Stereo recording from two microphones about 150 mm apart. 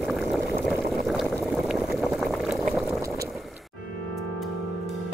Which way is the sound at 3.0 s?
20° right (ahead or behind).